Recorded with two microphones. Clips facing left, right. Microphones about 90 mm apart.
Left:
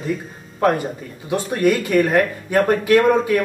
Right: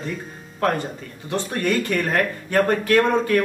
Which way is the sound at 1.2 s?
10° left (ahead or behind).